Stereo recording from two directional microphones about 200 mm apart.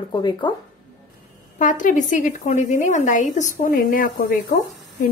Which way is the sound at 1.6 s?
40° left (ahead or behind).